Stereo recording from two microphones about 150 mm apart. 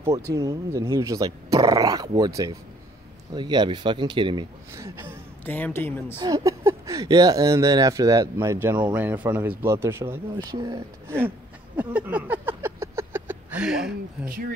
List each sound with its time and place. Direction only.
0.3 s speech: 25° right (ahead or behind)
4.7 s speech: 20° right (ahead or behind)
5.4 s a woman's voice: 10° left (ahead or behind)
6.1 s speech: 25° right (ahead or behind)
11.1 s a sound: 10° right (ahead or behind)